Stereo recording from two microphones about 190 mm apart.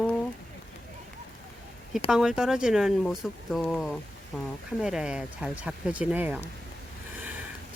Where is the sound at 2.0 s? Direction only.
5° right (ahead or behind).